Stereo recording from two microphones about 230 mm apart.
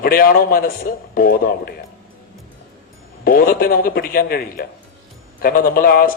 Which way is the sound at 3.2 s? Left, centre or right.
Left.